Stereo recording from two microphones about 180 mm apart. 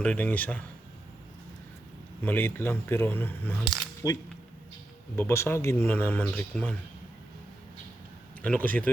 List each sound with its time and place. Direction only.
0.0 s speech: 5° left (ahead or behind)
2.2 s speech: 10° left (ahead or behind)
3.6 s speech: 20° left (ahead or behind)
8.4 s speech: 10° left (ahead or behind)